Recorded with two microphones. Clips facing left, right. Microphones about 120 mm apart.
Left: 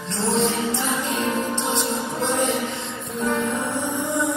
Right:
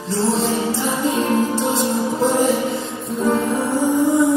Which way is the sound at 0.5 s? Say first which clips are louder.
Right 4 dB; 35° right (ahead or behind).